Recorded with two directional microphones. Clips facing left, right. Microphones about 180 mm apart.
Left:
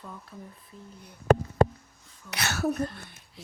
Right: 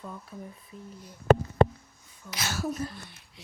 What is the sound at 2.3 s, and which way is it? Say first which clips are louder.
Speech: left 4 dB; 65° left (ahead or behind).